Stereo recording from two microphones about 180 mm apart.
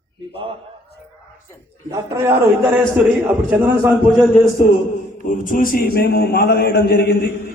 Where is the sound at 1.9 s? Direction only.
15° right (ahead or behind).